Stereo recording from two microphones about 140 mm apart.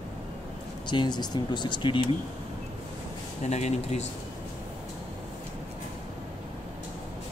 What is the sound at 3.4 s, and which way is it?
Speech, 55° left (ahead or behind).